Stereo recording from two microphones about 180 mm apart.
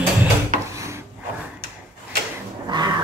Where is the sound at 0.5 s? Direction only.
45° right (ahead or behind).